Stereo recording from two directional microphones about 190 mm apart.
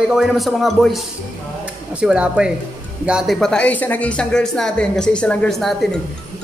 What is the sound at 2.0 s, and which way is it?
Speech, 5° right (ahead or behind).